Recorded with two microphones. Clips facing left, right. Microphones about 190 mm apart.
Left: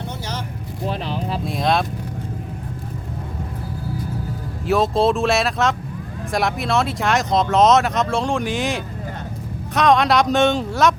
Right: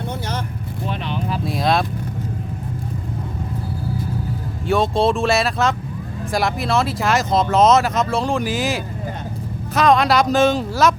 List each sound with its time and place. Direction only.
0.9 s speech: 35° left (ahead or behind)
1.5 s speech: centre (ahead or behind)
4.6 s speech: centre (ahead or behind)